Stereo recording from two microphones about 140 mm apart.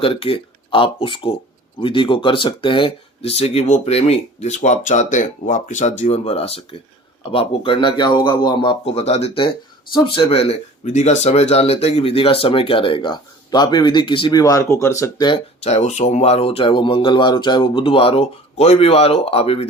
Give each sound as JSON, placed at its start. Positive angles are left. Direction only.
{"t": 0.0, "sound": "speech", "side_deg": 40}
{"t": 15.6, "sound": "speech", "side_deg": 55}